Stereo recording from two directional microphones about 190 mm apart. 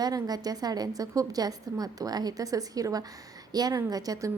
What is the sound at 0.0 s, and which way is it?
A woman's voice, 20° right (ahead or behind).